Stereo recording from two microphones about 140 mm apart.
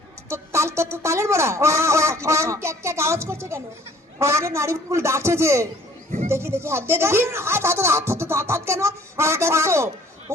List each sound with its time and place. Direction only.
0.3 s speech: 20° right (ahead or behind)